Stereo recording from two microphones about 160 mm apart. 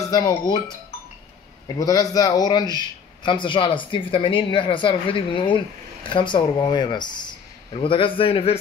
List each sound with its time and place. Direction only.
0.0 s speech: 25° left (ahead or behind)
1.8 s a man's voice: 25° left (ahead or behind)